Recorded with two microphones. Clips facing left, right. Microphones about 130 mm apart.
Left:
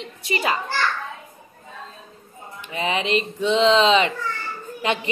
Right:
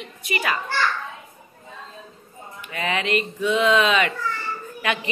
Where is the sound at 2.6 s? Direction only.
20° left (ahead or behind).